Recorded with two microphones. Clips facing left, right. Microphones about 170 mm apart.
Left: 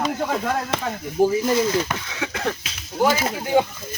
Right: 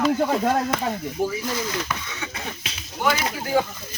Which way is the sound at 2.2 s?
75° left (ahead or behind).